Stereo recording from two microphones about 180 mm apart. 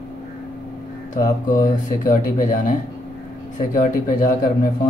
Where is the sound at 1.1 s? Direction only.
45° left (ahead or behind).